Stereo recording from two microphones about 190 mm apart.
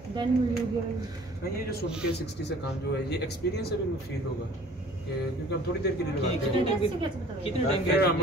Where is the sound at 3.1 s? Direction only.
60° left (ahead or behind).